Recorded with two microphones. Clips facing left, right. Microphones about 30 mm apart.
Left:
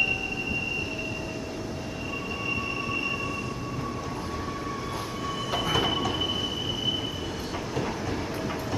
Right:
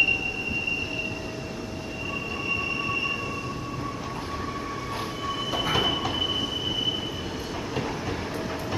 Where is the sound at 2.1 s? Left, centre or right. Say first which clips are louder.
Right 2 dB; centre.